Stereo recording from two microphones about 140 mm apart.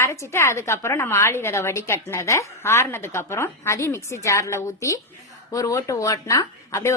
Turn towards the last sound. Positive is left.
turn(degrees=20)  # may be behind; listen again after turning